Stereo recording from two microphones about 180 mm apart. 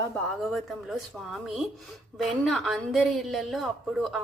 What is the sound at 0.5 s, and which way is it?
A woman's voice, centre (ahead or behind).